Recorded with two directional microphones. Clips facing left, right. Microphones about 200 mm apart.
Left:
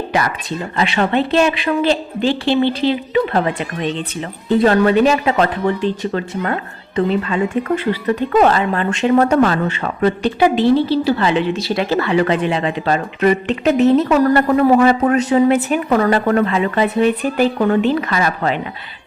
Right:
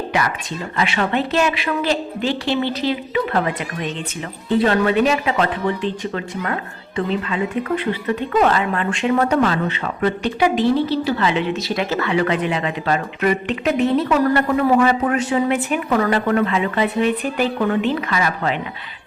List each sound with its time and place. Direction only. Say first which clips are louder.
0.8 s a woman's voice: left 3 dB; 30° left (ahead or behind)
4.4 s a woman's voice: left 4 dB; 40° left (ahead or behind)
10.2 s a woman's voice: left 4 dB; 30° left (ahead or behind)